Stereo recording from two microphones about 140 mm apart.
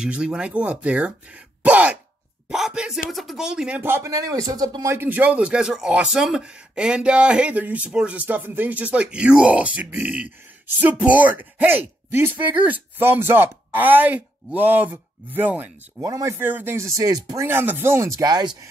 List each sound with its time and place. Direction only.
0.0 s speech: 5° right (ahead or behind)
2.4 s a sound: 5° right (ahead or behind)
3.1 s speech: centre (ahead or behind)
16.0 s speech: 25° right (ahead or behind)